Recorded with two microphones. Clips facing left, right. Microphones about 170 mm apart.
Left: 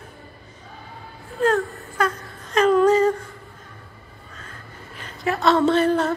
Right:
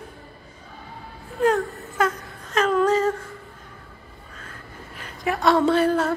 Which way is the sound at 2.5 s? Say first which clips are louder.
Left 4 dB; centre (ahead or behind).